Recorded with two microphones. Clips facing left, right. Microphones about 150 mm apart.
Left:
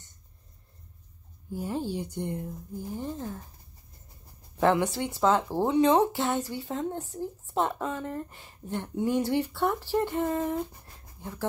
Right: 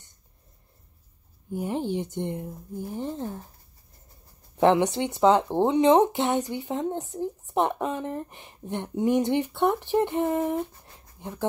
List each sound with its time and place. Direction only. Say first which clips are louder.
1.5 s speech: right 4 dB; 20° right (ahead or behind)
4.6 s speech: right 4 dB; 20° right (ahead or behind)